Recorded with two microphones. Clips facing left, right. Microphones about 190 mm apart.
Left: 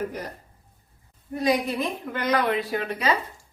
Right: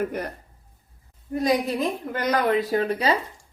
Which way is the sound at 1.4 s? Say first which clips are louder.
Right 1 dB; 40° right (ahead or behind).